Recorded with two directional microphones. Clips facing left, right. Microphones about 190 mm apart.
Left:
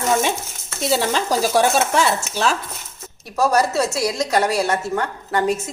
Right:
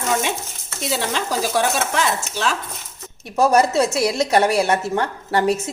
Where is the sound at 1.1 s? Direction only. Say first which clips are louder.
Left 3 dB; 40° left (ahead or behind).